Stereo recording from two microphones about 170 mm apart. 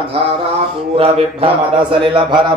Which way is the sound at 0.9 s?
35° right (ahead or behind).